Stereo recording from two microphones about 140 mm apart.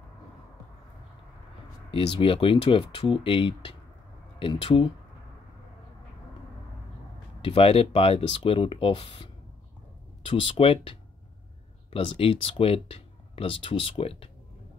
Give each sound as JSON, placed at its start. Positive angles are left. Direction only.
{"t": 1.9, "sound": "speech", "side_deg": 40}
{"t": 7.4, "sound": "speech", "side_deg": 40}